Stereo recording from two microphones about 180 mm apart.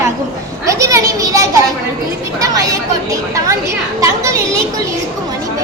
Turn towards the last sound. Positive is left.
turn(degrees=-15)  # may be behind; listen again after turning